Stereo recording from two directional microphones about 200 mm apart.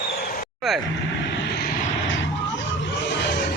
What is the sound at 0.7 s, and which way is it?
Speech, centre (ahead or behind).